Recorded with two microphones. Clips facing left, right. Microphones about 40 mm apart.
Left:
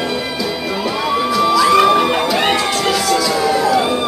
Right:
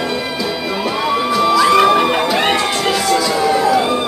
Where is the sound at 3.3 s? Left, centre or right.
Centre.